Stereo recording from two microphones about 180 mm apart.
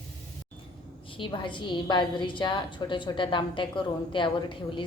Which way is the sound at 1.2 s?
25° left (ahead or behind).